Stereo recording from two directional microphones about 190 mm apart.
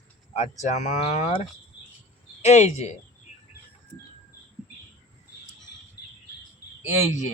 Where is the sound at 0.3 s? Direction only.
35° left (ahead or behind).